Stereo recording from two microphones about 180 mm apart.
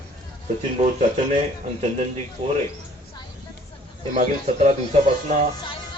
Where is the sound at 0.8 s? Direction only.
40° right (ahead or behind).